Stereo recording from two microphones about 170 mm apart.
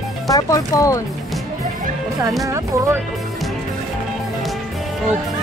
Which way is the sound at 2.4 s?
15° right (ahead or behind).